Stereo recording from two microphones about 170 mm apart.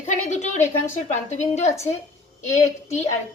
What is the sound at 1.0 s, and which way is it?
Speech, 40° left (ahead or behind).